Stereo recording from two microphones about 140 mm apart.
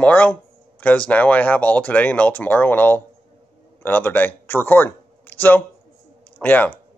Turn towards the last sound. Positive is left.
turn(degrees=10)  # may be behind; listen again after turning